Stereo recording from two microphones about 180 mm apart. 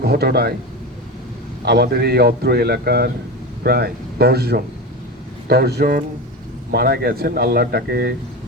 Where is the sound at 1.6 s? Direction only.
60° right (ahead or behind).